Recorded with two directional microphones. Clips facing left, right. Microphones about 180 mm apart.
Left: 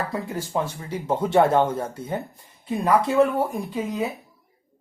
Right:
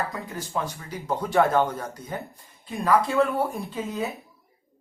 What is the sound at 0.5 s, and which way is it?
Speech, 25° left (ahead or behind).